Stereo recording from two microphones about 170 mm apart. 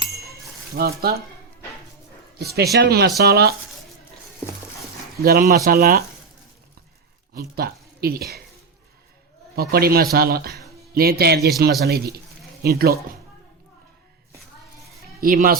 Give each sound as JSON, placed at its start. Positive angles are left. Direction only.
{"t": 0.7, "sound": "a man's voice", "side_deg": -65}
{"t": 2.4, "sound": "a man's voice", "side_deg": -70}
{"t": 5.2, "sound": "a man's voice", "side_deg": -65}
{"t": 7.3, "sound": "speech", "side_deg": -65}
{"t": 9.6, "sound": "a man's voice", "side_deg": -65}
{"t": 15.2, "sound": "a man's voice", "side_deg": -55}